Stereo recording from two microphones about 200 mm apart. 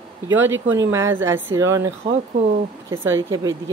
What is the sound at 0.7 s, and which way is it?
Speech, 15° right (ahead or behind).